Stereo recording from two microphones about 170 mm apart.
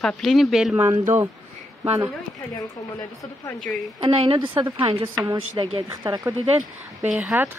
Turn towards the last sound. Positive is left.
turn(degrees=-10)  # may be behind; listen again after turning